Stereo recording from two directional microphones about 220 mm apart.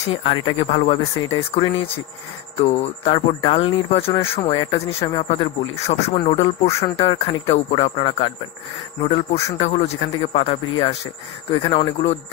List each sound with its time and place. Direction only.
0.1 s speech: 25° left (ahead or behind)
1.1 s speech: 15° left (ahead or behind)